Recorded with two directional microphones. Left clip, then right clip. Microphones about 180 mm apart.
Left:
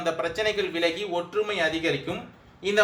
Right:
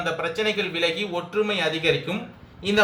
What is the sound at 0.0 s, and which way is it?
A man's voice, 45° left (ahead or behind).